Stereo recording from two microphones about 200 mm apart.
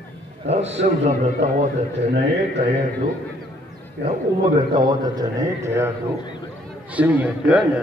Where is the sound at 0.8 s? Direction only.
35° right (ahead or behind).